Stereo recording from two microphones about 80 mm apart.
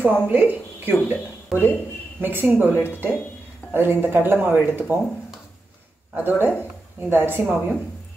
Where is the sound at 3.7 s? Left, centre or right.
Right.